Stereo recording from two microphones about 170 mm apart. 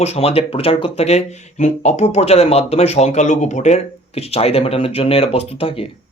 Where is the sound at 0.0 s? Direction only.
40° left (ahead or behind).